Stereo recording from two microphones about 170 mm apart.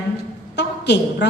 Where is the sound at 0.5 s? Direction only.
80° left.